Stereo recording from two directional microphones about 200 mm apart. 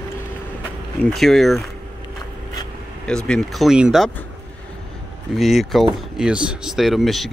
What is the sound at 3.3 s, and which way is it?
Speech, centre (ahead or behind).